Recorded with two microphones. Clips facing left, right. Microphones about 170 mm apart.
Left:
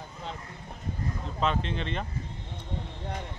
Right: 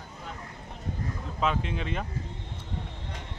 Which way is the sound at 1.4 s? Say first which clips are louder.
Even; 10° right (ahead or behind).